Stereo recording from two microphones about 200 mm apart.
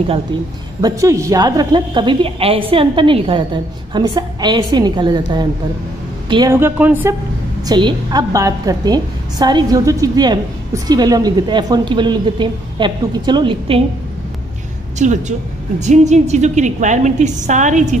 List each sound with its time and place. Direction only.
0.7 s a woman's voice: 15° right (ahead or behind)
7.6 s a woman's voice: 20° right (ahead or behind)
15.0 s a woman's voice: 35° right (ahead or behind)